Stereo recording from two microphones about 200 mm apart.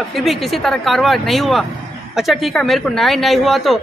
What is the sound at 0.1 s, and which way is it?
A man's voice, centre (ahead or behind).